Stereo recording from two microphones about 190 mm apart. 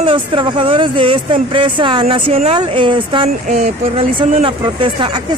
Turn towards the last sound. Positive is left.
turn(degrees=-25)  # may be behind; listen again after turning